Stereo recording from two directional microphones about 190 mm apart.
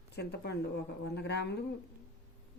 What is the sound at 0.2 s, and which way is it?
Speech, 60° left (ahead or behind).